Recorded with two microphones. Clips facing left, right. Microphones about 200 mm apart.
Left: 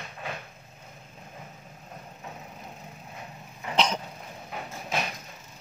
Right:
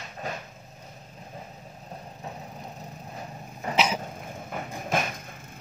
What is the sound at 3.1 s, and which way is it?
Vehicle, 40° right (ahead or behind).